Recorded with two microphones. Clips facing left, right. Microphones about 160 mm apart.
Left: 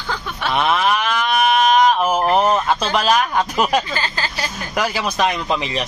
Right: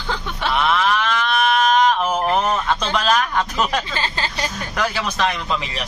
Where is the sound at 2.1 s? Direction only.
30° left (ahead or behind).